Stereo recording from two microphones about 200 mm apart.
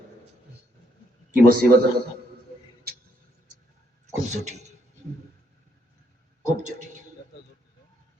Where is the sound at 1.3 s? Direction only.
50° right (ahead or behind).